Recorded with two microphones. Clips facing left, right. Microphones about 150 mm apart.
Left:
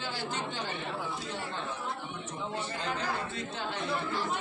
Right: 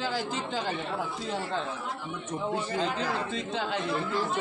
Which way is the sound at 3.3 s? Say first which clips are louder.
Right 5 dB; 90° right.